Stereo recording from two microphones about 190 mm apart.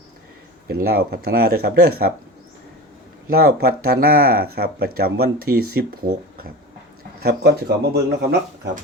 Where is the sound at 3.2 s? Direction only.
50° right (ahead or behind).